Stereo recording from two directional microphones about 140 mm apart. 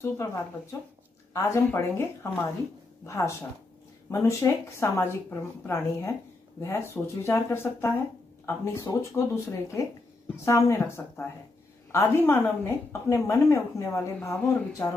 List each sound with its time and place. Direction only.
0.0 s speech: 20° left (ahead or behind)